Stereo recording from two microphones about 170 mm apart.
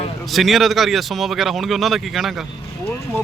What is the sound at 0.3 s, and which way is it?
Speech, centre (ahead or behind).